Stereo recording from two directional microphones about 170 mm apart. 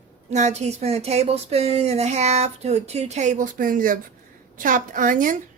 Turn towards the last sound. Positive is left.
turn(degrees=-50)  # may be behind; listen again after turning